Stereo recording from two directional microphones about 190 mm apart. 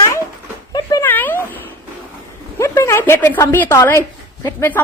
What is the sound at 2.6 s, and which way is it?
Speech, 15° left (ahead or behind).